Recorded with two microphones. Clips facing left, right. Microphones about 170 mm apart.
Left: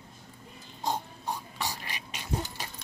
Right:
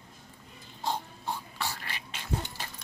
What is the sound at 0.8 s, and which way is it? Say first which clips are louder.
Dog: left 1 dB; 15° left (ahead or behind).